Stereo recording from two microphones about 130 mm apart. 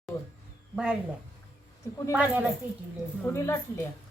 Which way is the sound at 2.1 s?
10° right (ahead or behind).